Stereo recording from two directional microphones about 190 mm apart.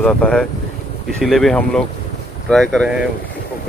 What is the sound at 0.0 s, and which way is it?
Speech, 5° left (ahead or behind).